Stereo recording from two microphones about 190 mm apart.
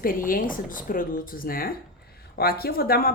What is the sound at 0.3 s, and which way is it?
Speech, 45° left (ahead or behind).